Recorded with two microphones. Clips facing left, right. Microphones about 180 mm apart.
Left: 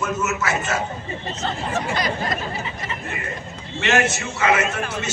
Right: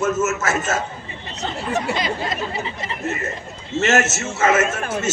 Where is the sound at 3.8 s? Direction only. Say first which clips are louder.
Right 2 dB; 45° right (ahead or behind).